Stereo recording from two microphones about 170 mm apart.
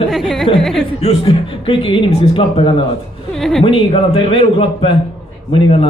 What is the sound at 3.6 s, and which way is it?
A man's voice, 35° left (ahead or behind).